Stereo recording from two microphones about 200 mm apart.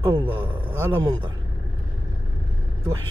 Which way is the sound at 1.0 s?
20° right (ahead or behind).